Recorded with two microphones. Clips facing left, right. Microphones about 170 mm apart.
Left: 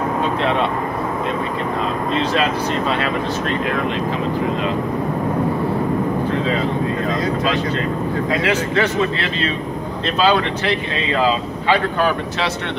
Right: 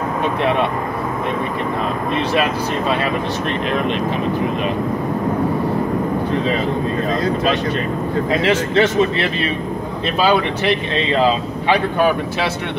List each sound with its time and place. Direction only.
8.3 s speech: 25° right (ahead or behind)
10.2 s speech: 20° right (ahead or behind)